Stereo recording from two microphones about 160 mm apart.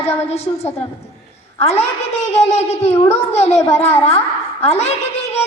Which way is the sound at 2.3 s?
40° left (ahead or behind).